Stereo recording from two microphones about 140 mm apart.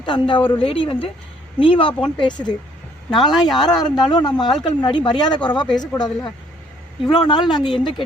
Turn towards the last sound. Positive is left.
turn(degrees=35)  # may be behind; listen again after turning